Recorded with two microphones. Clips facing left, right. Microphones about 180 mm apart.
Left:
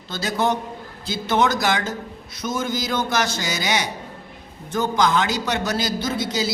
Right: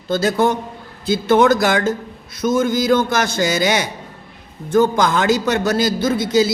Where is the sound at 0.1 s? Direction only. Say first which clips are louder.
Right 6 dB; 50° right (ahead or behind).